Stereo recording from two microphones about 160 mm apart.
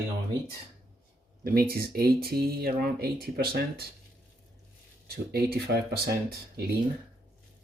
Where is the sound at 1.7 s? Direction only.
70° right (ahead or behind).